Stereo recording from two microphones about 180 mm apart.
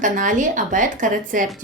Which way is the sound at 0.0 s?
45° right (ahead or behind).